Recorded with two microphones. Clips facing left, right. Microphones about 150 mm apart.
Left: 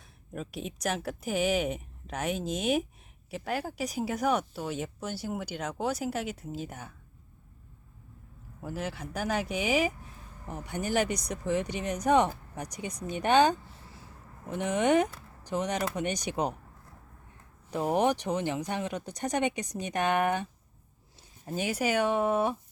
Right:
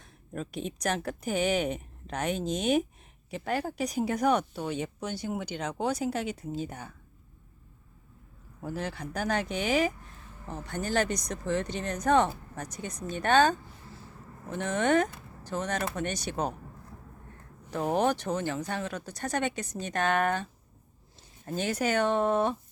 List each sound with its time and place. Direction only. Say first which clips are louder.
0.0 s speech: right 2 dB; 5° left (ahead or behind)
8.6 s speech: right 1 dB; 5° left (ahead or behind)
17.7 s speech: even; 10° left (ahead or behind)